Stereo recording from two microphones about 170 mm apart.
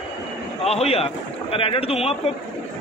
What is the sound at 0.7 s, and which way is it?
Speech, 35° left (ahead or behind).